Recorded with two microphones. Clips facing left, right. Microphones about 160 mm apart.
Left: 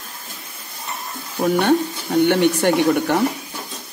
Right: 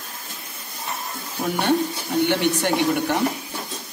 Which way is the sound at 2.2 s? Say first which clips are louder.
Left 6 dB; 55° left (ahead or behind).